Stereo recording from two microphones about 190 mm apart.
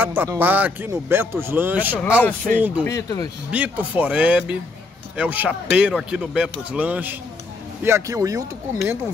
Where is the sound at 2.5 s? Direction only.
5° left (ahead or behind).